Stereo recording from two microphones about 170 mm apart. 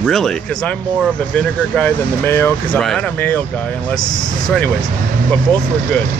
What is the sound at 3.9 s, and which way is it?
Speech, 25° left (ahead or behind).